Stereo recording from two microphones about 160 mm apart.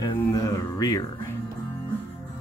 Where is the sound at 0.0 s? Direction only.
20° left (ahead or behind).